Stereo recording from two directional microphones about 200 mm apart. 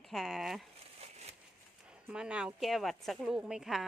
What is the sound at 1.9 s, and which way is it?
Speech, 5° right (ahead or behind).